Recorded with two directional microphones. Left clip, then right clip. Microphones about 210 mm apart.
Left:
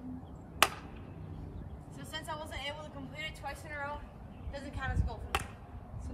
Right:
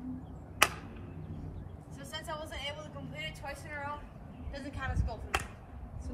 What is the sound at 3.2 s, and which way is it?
A woman's voice, 50° left (ahead or behind).